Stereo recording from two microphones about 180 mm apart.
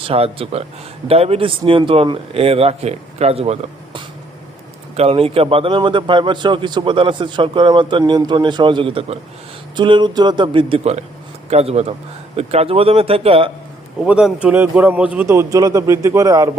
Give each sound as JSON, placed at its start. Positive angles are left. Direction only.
{"t": 0.0, "sound": "a man's voice", "side_deg": -30}
{"t": 14.0, "sound": "a man's voice", "side_deg": -5}